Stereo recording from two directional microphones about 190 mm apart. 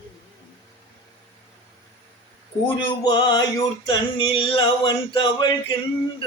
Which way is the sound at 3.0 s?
20° left (ahead or behind).